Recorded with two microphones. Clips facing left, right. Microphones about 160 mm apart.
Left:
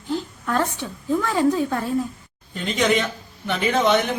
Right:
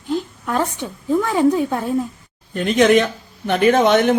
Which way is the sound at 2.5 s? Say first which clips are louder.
Right 7 dB; 55° right (ahead or behind).